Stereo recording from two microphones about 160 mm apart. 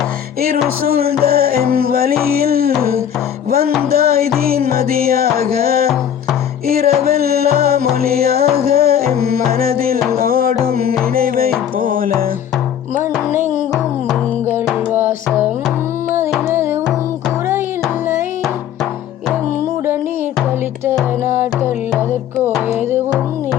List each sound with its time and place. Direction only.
0.9 s music: 70° right (ahead or behind)
21.2 s music: 15° right (ahead or behind)